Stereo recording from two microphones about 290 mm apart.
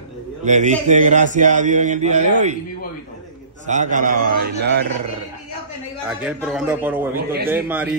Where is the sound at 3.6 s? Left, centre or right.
Right.